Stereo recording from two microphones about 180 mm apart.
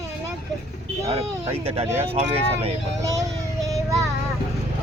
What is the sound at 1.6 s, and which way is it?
Speech, 30° right (ahead or behind).